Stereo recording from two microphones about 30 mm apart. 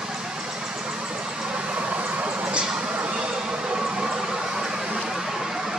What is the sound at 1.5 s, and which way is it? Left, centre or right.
Train, right.